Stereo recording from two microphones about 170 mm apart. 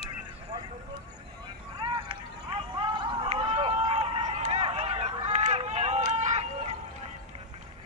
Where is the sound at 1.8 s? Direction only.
30° right (ahead or behind).